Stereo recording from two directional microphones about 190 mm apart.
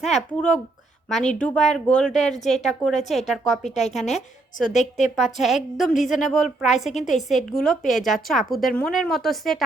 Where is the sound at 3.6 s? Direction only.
35° left (ahead or behind).